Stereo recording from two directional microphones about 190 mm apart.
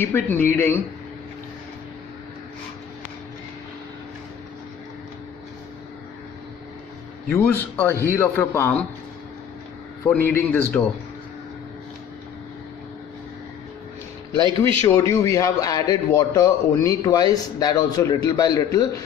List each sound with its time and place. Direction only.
0.0 s a man's voice: 10° left (ahead or behind)
7.2 s a man's voice: 10° left (ahead or behind)
10.0 s a man's voice: 10° left (ahead or behind)
14.6 s a man's voice: 15° left (ahead or behind)